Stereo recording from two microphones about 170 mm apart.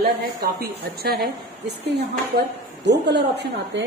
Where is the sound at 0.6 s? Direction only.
70° right (ahead or behind).